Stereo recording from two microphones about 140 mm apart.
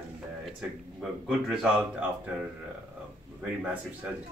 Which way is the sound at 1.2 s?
5° right (ahead or behind).